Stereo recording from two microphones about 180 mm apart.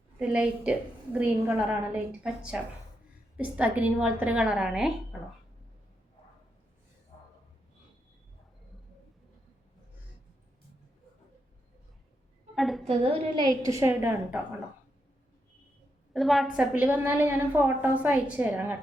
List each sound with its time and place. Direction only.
0.2 s a woman's voice: 5° right (ahead or behind)
12.5 s a sound: centre (ahead or behind)
12.9 s a woman's voice: 30° right (ahead or behind); by 14.3 s 15° right (ahead or behind)
16.1 s a woman's voice: centre (ahead or behind)